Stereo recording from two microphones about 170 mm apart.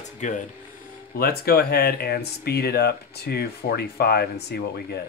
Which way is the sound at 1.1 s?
65° left (ahead or behind).